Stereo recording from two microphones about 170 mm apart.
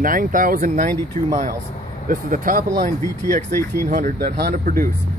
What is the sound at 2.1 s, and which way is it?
Speech, 55° right (ahead or behind).